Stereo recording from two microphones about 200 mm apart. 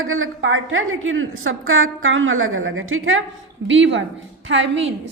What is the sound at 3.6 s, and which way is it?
A woman's voice, 70° right (ahead or behind).